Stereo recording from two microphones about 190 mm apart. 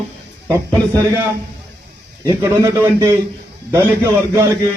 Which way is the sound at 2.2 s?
15° right (ahead or behind).